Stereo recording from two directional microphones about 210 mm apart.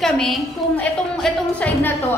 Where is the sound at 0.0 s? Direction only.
Centre (ahead or behind).